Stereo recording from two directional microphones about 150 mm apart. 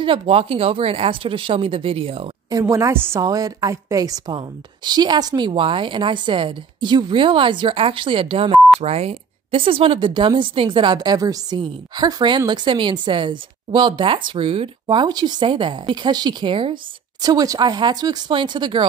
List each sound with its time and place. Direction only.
0.0 s speech: 35° right (ahead or behind)
2.5 s speech: 20° right (ahead or behind)